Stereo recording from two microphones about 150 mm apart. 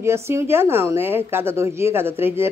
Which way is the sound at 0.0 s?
15° right (ahead or behind).